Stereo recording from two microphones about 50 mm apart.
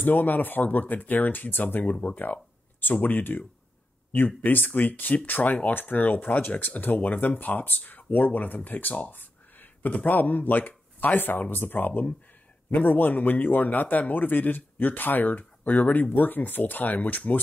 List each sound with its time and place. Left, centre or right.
0.0 s speech: left